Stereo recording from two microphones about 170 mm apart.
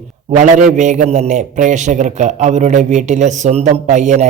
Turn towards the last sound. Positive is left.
turn(degrees=-45)  # may be behind; listen again after turning